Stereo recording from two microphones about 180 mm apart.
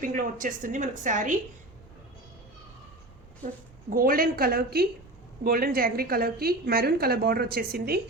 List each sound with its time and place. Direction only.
0.0 s speech: 50° right (ahead or behind)
3.4 s a woman's voice: 50° right (ahead or behind)